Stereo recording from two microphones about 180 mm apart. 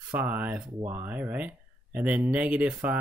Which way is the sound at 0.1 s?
10° right (ahead or behind).